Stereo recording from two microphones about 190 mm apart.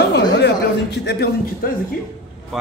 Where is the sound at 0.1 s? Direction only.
65° left (ahead or behind).